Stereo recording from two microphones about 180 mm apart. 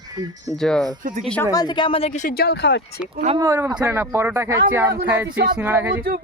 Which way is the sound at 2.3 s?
60° left (ahead or behind).